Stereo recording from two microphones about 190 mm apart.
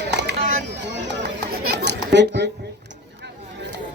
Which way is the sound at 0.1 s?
65° right (ahead or behind).